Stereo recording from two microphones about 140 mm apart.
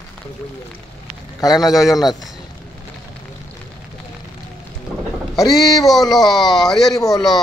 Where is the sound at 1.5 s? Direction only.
Centre (ahead or behind).